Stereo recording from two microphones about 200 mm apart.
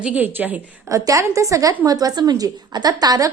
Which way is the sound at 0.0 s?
10° right (ahead or behind).